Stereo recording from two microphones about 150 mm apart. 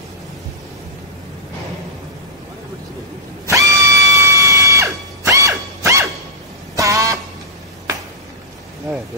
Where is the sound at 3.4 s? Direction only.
20° right (ahead or behind).